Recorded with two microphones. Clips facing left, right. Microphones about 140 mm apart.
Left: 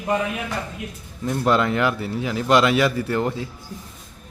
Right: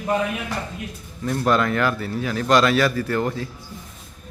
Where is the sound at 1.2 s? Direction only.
20° left (ahead or behind).